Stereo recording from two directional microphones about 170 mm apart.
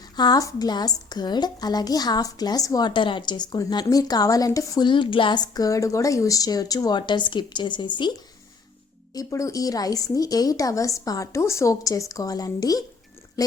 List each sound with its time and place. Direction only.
0.2 s a woman's voice: 20° left (ahead or behind)
9.1 s a woman's voice: 20° left (ahead or behind)